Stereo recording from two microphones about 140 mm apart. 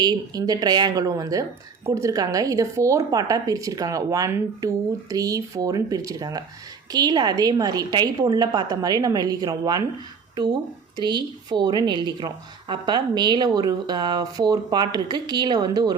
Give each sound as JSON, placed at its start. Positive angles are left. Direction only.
{"t": 0.0, "sound": "a woman's voice", "side_deg": -30}